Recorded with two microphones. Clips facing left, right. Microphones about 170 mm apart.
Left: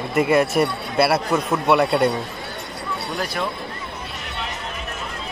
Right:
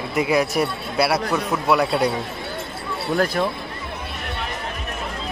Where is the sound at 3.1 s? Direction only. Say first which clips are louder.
Right 8 dB; 50° right (ahead or behind).